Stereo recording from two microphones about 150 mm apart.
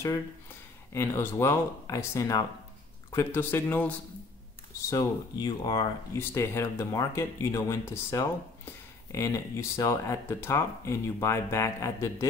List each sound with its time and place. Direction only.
0.9 s speech: 15° left (ahead or behind)
4.8 s speech: 25° left (ahead or behind)
6.1 s speech: 15° left (ahead or behind)